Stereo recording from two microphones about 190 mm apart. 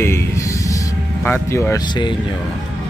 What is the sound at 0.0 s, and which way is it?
Music, 15° left (ahead or behind).